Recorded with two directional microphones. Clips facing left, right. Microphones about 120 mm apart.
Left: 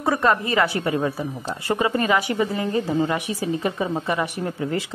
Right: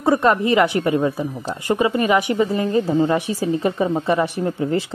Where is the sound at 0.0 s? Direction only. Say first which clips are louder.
Right 4 dB; 25° right (ahead or behind).